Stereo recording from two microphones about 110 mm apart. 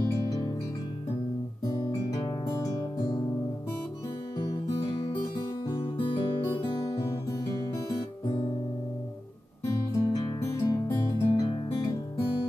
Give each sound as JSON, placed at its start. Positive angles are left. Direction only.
{"t": 0.0, "sound": "music", "side_deg": 35}
{"t": 1.7, "sound": "guitar", "side_deg": 30}
{"t": 2.2, "sound": "music", "side_deg": 35}
{"t": 4.8, "sound": "music", "side_deg": 35}
{"t": 5.8, "sound": "music", "side_deg": 55}
{"t": 9.7, "sound": "music", "side_deg": 40}
{"t": 10.4, "sound": "music", "side_deg": 25}